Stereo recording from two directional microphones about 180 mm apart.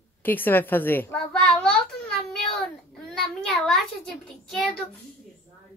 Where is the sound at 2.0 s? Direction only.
5° left (ahead or behind).